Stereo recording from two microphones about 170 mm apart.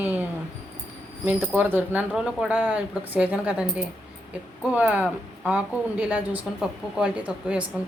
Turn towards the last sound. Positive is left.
turn(degrees=-5)  # may be behind; listen again after turning